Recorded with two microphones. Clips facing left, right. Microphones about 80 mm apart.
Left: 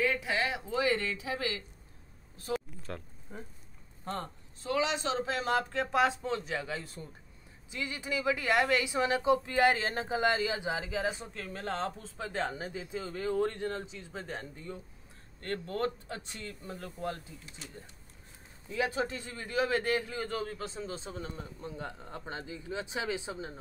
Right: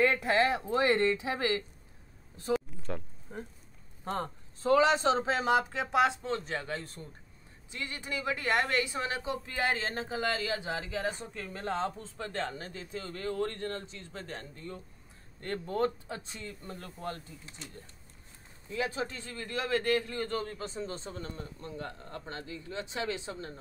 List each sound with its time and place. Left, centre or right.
0.0 s speech: right
1.0 s speech: right
2.5 s a sound: centre
4.6 s speech: right; by 7.0 s centre
8.0 s a man's voice: centre
12.2 s a man's voice: centre
15.7 s speech: centre
16.3 s speech: centre
18.7 s a man's voice: centre